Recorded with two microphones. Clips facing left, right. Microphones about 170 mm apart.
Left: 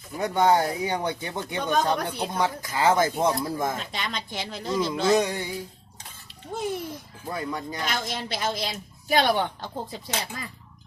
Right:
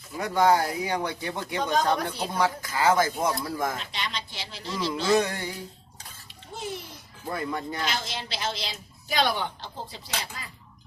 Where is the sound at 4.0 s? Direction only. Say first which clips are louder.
Left 3 dB; 50° left (ahead or behind).